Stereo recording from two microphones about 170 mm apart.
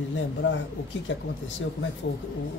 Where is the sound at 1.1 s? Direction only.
90° left.